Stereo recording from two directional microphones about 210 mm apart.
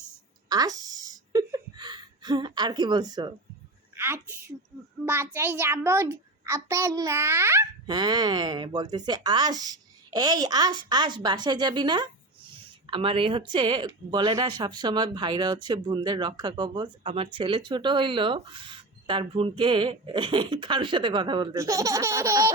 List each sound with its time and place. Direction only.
0.4 s a woman's voice: 20° right (ahead or behind)